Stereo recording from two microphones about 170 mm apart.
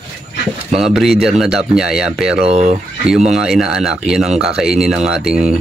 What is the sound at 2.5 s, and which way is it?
Speech, 40° right (ahead or behind).